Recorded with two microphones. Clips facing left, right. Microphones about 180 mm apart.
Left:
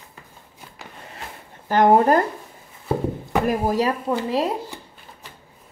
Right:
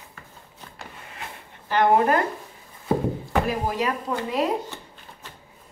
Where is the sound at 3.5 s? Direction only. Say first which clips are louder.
Left 5 dB; 40° left (ahead or behind).